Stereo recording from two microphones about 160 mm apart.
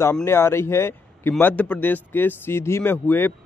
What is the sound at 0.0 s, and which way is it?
Speech, 15° left (ahead or behind).